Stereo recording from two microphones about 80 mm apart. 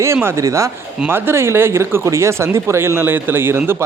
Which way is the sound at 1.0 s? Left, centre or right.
Right.